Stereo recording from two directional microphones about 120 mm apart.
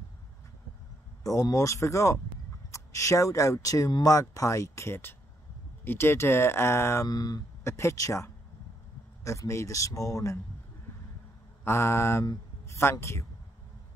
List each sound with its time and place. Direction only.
1.2 s speech: 30° left (ahead or behind)
11.6 s speech: 20° left (ahead or behind)